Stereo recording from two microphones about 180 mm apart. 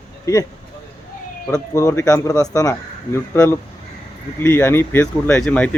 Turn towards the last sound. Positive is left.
turn(degrees=10)  # may be behind; listen again after turning